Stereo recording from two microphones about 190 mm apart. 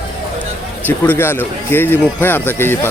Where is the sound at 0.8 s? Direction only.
10° left (ahead or behind).